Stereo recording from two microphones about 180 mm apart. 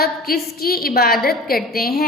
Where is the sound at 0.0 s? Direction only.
60° left (ahead or behind).